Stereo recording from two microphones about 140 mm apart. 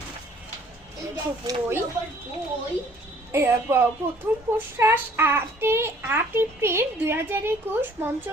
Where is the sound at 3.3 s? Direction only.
15° right (ahead or behind).